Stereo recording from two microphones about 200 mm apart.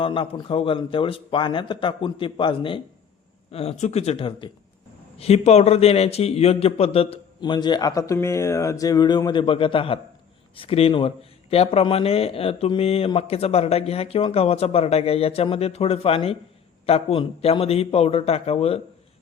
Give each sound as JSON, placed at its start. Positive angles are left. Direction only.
{"t": 0.0, "sound": "a man's voice", "side_deg": 25}